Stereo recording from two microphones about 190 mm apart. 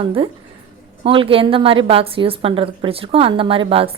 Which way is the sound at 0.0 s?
30° right (ahead or behind).